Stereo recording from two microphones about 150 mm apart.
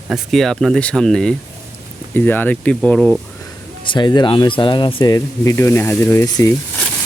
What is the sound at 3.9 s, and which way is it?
Speech, 30° left (ahead or behind).